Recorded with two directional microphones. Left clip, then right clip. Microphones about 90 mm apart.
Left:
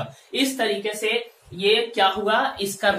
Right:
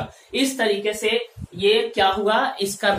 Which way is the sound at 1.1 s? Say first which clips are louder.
Right 2 dB; centre (ahead or behind).